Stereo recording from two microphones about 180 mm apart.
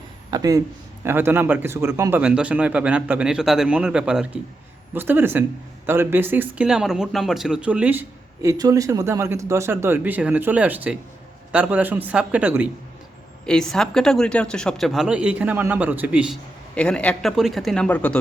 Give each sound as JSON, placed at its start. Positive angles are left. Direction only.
{"t": 0.3, "sound": "speech", "side_deg": -20}
{"t": 13.4, "sound": "speech", "side_deg": 5}
{"t": 16.7, "sound": "speech", "side_deg": 5}